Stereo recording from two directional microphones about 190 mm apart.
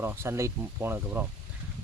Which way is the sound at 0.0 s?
15° right (ahead or behind).